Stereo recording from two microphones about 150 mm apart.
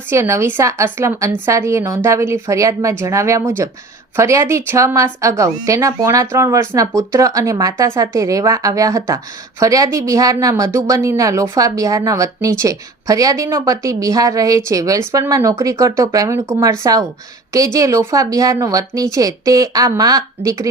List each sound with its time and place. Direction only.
0.1 s speech: 15° right (ahead or behind)